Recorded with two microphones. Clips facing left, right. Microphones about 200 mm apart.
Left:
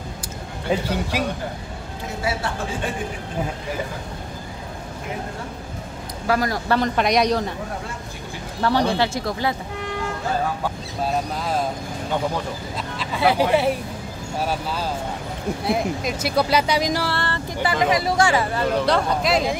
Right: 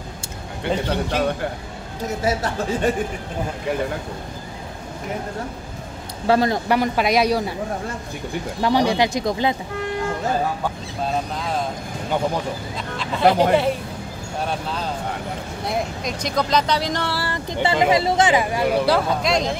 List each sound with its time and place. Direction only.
0.7 s speech: 5° left (ahead or behind)
2.2 s speech: 40° right (ahead or behind)
6.2 s speech: 25° right (ahead or behind)
6.7 s speech: 5° right (ahead or behind)
8.6 s speech: 15° right (ahead or behind)
13.2 s speech: 45° right (ahead or behind)
14.4 s speech: 5° left (ahead or behind)
17.1 s speech: 5° right (ahead or behind)
17.5 s speech: 25° right (ahead or behind); by 19.6 s 5° left (ahead or behind)